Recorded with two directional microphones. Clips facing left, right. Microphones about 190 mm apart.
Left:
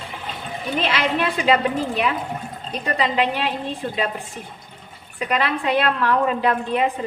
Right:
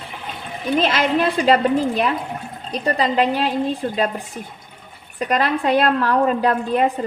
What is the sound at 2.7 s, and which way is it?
Speech, 35° right (ahead or behind).